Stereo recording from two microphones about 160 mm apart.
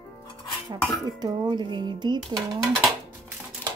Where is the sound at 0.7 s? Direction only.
25° right (ahead or behind).